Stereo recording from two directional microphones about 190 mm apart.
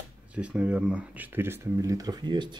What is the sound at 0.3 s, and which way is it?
Speech, 5° right (ahead or behind).